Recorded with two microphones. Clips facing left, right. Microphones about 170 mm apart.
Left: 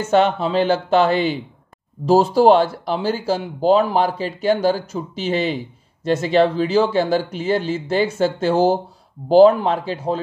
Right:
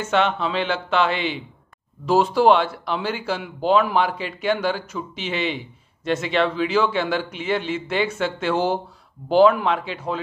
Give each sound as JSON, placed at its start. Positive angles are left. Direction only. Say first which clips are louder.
{"t": 0.0, "sound": "speech", "louder": "left 5 dB", "side_deg": 40}